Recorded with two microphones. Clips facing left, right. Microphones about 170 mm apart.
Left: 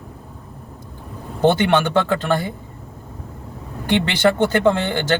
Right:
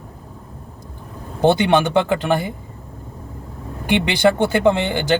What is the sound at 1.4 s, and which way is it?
Speech, 15° right (ahead or behind).